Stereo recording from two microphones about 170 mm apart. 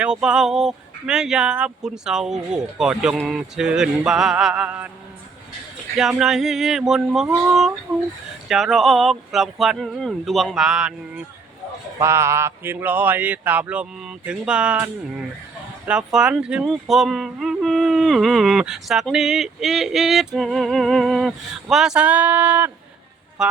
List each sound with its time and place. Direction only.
0.0 s speech: 5° right (ahead or behind)
6.0 s speech: 5° right (ahead or behind)
11.9 s a sound: 15° right (ahead or behind)
15.9 s speech: 5° right (ahead or behind)